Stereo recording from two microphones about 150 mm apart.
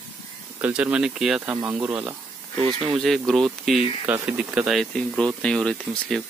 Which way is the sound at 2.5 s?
35° right (ahead or behind).